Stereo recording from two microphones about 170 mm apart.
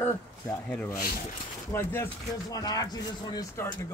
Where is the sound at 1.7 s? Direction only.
15° left (ahead or behind).